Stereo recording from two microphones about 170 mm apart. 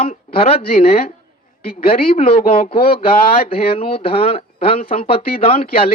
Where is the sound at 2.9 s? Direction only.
35° left (ahead or behind).